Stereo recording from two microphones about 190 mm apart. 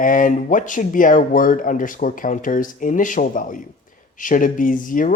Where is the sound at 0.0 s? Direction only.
45° left (ahead or behind).